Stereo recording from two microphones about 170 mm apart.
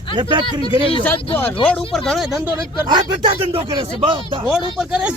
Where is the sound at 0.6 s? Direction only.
30° left (ahead or behind).